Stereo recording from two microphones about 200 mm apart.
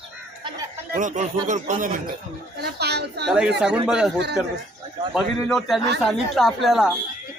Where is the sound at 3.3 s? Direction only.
5° right (ahead or behind).